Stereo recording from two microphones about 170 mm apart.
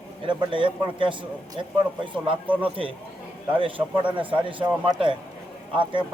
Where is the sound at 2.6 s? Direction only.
30° right (ahead or behind).